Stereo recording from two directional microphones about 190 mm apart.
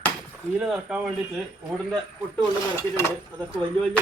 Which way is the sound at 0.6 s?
5° right (ahead or behind).